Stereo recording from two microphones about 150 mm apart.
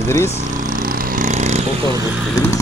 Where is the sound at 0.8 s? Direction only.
70° right (ahead or behind); by 1.6 s 50° right (ahead or behind).